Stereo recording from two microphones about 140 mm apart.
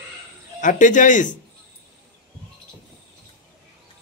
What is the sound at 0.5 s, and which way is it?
Speech, 65° left (ahead or behind).